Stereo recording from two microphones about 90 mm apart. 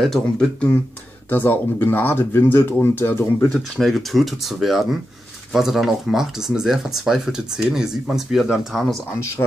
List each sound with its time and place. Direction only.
0.0 s speech: 5° left (ahead or behind)
1.3 s speech: 20° left (ahead or behind)
3.5 s speech: centre (ahead or behind)